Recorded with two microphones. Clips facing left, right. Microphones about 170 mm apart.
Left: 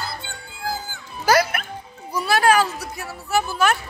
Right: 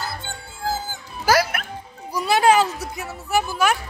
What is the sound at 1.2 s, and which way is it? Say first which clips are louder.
Music: left 1 dB; 5° right (ahead or behind).